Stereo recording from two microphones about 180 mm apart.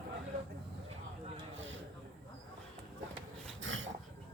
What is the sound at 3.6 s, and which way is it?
Dog, 90° right.